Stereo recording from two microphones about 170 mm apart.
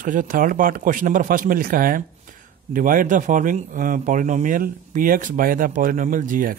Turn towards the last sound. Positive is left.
turn(degrees=-50)  # may be behind; listen again after turning